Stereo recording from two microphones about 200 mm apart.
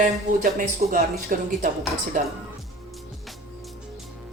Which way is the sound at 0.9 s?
40° right (ahead or behind).